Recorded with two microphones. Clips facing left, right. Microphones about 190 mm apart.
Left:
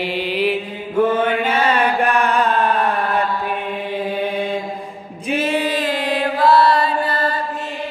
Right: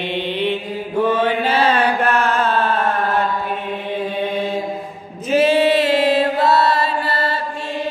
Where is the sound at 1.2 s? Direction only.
30° right (ahead or behind).